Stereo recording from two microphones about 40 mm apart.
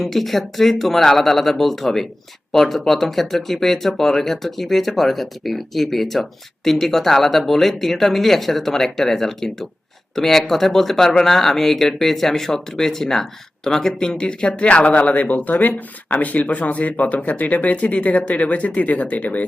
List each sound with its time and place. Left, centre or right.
0.0 s speech: centre; by 19.5 s left